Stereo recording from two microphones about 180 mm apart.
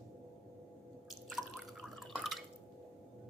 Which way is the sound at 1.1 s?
Centre (ahead or behind).